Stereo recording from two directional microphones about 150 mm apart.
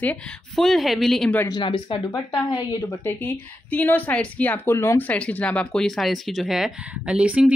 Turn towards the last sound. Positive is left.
turn(degrees=-10)  # may be behind; listen again after turning